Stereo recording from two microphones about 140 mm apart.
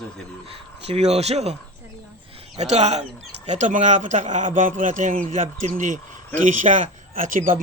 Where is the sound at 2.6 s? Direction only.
50° right (ahead or behind); by 7.6 s 70° right (ahead or behind).